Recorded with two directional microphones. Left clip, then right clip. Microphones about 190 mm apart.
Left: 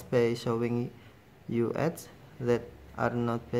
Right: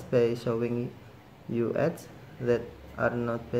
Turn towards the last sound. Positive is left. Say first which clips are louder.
# right 2 dB
turn(degrees=25)  # may be behind; listen again after turning